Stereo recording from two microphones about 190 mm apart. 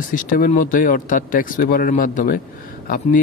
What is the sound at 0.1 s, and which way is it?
A man's voice, 45° left (ahead or behind).